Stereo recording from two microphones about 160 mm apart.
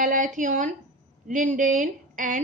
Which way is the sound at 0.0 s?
55° right (ahead or behind).